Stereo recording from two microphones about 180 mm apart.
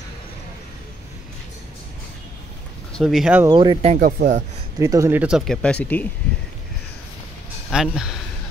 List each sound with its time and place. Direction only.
2.9 s speech: centre (ahead or behind)
3.4 s speech: 25° right (ahead or behind)
4.0 s speech: 50° right (ahead or behind)
4.7 s speech: 20° right (ahead or behind)
5.5 s speech: 5° left (ahead or behind)
7.7 s speech: 5° right (ahead or behind)